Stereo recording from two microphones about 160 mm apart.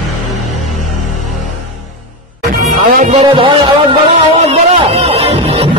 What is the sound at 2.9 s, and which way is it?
Speech, 50° right (ahead or behind).